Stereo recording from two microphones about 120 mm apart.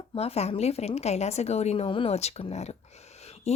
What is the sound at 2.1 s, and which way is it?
A woman's voice, 65° left (ahead or behind).